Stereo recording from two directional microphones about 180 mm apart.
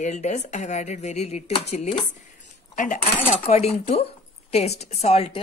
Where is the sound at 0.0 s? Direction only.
40° left (ahead or behind).